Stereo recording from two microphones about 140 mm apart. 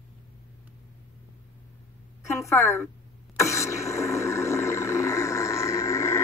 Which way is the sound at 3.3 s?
20° left (ahead or behind).